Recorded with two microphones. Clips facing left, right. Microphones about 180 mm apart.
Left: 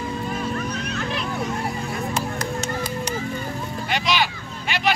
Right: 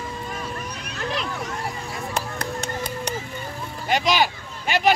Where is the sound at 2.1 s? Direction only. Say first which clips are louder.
Left 2 dB; 60° right (ahead or behind).